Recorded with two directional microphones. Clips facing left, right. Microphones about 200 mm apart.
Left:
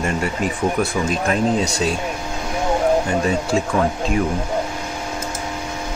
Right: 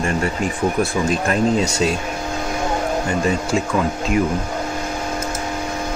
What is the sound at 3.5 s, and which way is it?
Speech, 40° left (ahead or behind).